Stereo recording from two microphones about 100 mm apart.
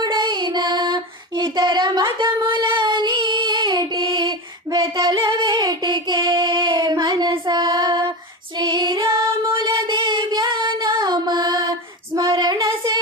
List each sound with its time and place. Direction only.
0.0 s child singing: 50° right (ahead or behind)
4.9 s female singing: 35° right (ahead or behind)
5.4 s child singing: 50° right (ahead or behind)
8.5 s female singing: 45° right (ahead or behind)
9.6 s music: 50° right (ahead or behind)
12.1 s female singing: 35° right (ahead or behind)
12.5 s a sound: 30° right (ahead or behind)